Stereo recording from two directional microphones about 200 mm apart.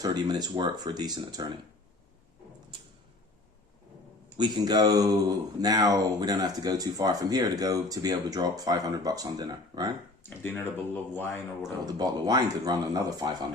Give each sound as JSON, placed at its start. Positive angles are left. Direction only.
{"t": 0.0, "sound": "speech", "side_deg": -20}
{"t": 4.4, "sound": "speech", "side_deg": -20}
{"t": 10.2, "sound": "speech", "side_deg": 10}
{"t": 11.6, "sound": "speech", "side_deg": -20}